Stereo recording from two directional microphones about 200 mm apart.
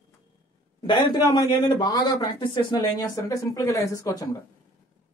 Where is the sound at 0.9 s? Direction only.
20° left (ahead or behind).